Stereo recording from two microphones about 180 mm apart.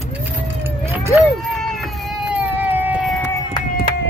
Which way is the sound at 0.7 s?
15° right (ahead or behind).